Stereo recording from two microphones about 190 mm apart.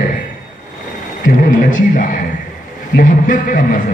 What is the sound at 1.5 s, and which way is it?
A man's voice, 45° left (ahead or behind).